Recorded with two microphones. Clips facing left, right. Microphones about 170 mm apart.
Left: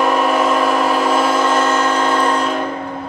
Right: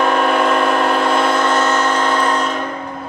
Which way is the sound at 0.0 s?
Centre (ahead or behind).